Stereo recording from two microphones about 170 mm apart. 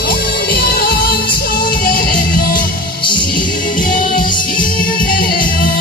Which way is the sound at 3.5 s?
50° left (ahead or behind).